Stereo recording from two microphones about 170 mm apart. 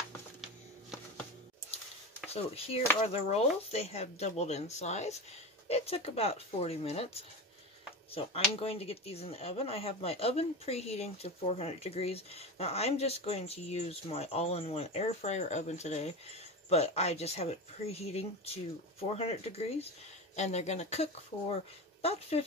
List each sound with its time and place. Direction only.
2.3 s speech: 35° left (ahead or behind)